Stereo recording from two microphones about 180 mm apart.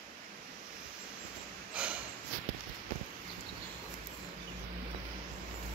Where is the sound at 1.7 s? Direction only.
5° right (ahead or behind).